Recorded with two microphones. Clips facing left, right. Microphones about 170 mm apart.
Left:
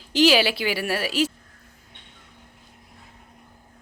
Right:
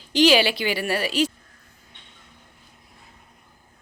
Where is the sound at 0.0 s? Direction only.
Centre (ahead or behind).